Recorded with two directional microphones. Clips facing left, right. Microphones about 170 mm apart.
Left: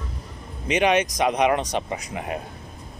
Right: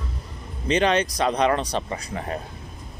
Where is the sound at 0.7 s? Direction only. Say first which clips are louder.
Even; 15° left (ahead or behind).